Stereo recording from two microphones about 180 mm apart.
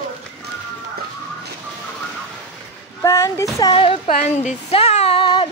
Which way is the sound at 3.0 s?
15° left (ahead or behind).